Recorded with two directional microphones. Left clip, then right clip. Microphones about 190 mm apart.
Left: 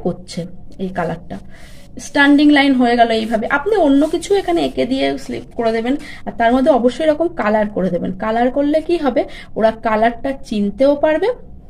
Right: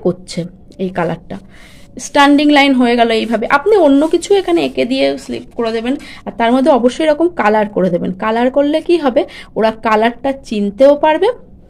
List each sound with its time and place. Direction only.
0.0 s a woman's voice: 45° right (ahead or behind)